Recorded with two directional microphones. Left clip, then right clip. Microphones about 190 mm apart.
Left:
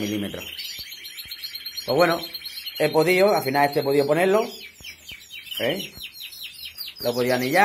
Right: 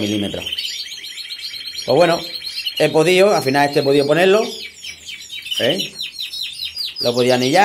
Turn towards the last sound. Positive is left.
turn(degrees=-10)  # may be behind; listen again after turning